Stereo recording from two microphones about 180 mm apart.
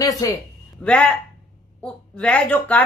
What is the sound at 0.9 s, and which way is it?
A woman's voice, 5° left (ahead or behind).